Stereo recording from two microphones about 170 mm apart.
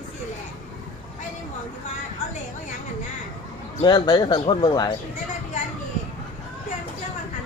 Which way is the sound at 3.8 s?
25° left (ahead or behind).